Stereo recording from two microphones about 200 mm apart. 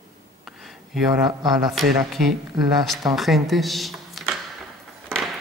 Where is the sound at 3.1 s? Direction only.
Centre (ahead or behind).